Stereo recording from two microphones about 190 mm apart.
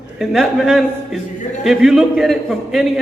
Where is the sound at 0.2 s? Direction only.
Centre (ahead or behind).